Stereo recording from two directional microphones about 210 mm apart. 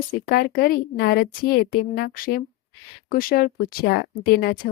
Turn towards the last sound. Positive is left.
turn(degrees=50)  # may be behind; listen again after turning